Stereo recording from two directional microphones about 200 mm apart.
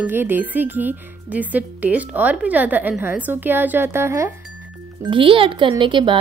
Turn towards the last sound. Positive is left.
turn(degrees=-25)  # may be behind; listen again after turning